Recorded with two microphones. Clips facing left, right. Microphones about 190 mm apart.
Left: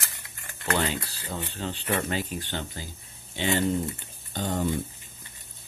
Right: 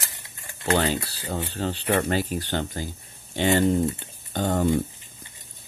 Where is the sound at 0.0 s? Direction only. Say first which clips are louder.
Right 2 dB; 20° right (ahead or behind).